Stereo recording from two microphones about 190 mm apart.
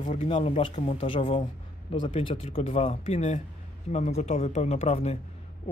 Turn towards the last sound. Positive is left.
turn(degrees=35)  # may be behind; listen again after turning